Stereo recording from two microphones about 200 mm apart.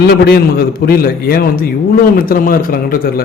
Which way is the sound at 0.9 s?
50° left (ahead or behind).